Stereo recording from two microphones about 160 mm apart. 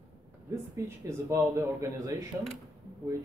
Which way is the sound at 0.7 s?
20° right (ahead or behind).